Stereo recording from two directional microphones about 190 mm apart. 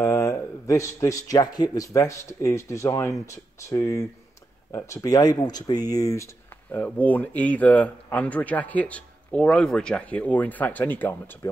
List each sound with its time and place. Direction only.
0.0 s speech: 15° left (ahead or behind)